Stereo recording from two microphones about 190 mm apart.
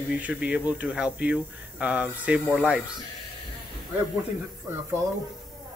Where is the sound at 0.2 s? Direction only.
5° right (ahead or behind).